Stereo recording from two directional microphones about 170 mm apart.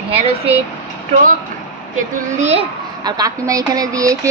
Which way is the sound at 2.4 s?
40° right (ahead or behind).